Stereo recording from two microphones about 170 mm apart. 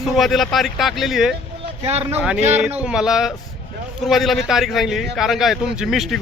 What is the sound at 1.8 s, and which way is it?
Speech, 35° right (ahead or behind).